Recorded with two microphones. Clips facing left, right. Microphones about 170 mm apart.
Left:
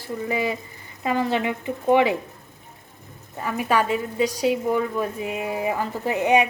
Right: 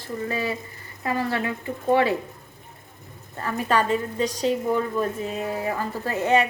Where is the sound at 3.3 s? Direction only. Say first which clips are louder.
Left 1 dB; 15° left (ahead or behind).